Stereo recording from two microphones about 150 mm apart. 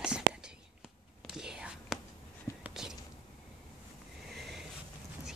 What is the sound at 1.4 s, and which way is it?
Whispering, 5° right (ahead or behind).